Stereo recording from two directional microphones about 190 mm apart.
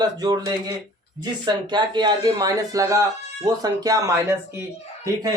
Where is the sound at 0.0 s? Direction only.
20° right (ahead or behind).